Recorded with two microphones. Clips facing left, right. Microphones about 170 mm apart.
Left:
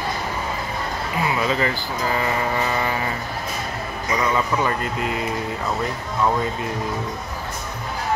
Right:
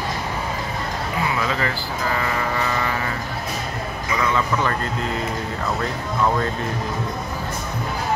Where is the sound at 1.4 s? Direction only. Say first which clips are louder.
Left 2 dB; 20° left (ahead or behind).